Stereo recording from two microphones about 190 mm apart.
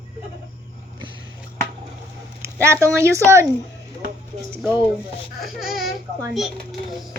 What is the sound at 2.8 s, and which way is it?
Speech, 15° right (ahead or behind).